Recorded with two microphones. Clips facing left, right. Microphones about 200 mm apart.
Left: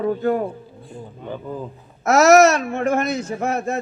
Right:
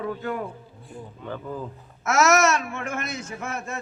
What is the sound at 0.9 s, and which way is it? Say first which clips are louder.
Speech: left 3 dB; 20° left (ahead or behind).